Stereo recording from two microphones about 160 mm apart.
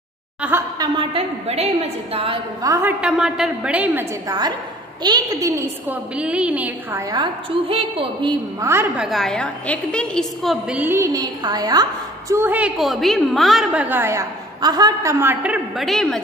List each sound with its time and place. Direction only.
0.4 s a woman's voice: 10° right (ahead or behind)
0.7 s a woman's voice: 35° right (ahead or behind)
2.6 s a woman's voice: 20° right (ahead or behind)
3.0 s a woman's voice: 5° right (ahead or behind)
4.3 s a woman's voice: 25° right (ahead or behind)
7.5 s a woman's voice: 35° right (ahead or behind)
8.5 s a woman's voice: 15° right (ahead or behind)
8.9 s a woman's voice: centre (ahead or behind)
13.8 s a woman's voice: 15° right (ahead or behind); by 16.2 s centre (ahead or behind)